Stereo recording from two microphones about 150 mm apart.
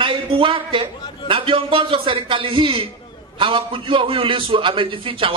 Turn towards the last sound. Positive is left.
turn(degrees=-35)  # may be behind; listen again after turning